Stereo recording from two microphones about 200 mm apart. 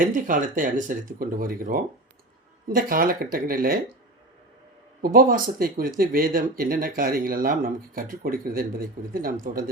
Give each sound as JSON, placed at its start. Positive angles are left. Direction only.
{"t": 0.0, "sound": "speech", "side_deg": -40}
{"t": 5.0, "sound": "speech", "side_deg": -45}